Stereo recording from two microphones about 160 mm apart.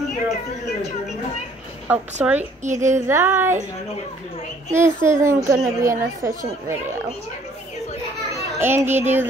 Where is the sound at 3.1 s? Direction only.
15° right (ahead or behind).